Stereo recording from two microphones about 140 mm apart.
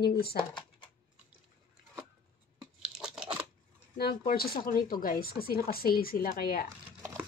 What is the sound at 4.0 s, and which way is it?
Speech, 90° left.